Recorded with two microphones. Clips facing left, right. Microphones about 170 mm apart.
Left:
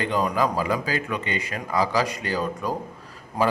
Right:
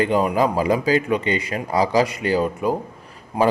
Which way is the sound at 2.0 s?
20° right (ahead or behind).